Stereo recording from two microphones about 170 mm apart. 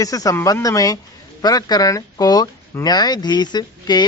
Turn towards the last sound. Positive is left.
turn(degrees=25)  # may be behind; listen again after turning